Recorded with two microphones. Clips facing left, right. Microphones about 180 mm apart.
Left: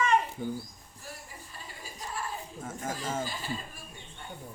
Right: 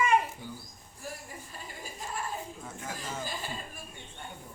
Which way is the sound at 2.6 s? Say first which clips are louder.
Left 5 dB; 50° left (ahead or behind).